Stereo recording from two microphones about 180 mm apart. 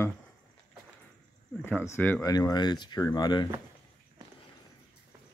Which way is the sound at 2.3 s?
20° left (ahead or behind).